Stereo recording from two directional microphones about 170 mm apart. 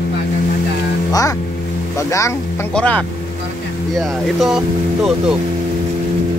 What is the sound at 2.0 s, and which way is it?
Speech, 20° left (ahead or behind).